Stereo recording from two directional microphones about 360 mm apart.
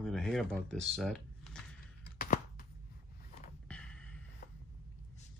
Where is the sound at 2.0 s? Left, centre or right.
Left.